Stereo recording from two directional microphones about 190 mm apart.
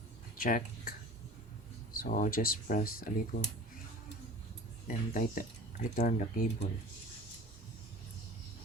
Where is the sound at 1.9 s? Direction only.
45° left (ahead or behind).